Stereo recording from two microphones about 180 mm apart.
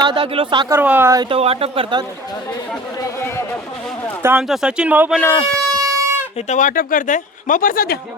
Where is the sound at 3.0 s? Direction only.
15° left (ahead or behind).